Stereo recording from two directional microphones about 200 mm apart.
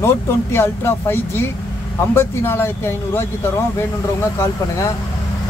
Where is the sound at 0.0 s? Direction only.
10° left (ahead or behind).